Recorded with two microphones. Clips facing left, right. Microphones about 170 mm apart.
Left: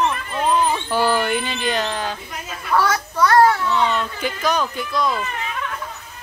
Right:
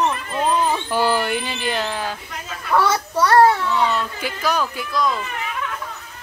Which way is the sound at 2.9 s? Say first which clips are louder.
Even; 30° right (ahead or behind).